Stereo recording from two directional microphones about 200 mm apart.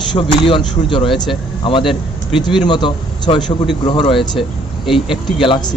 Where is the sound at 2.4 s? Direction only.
25° left (ahead or behind).